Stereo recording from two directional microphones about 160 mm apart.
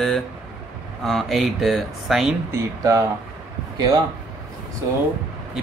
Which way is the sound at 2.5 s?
20° right (ahead or behind).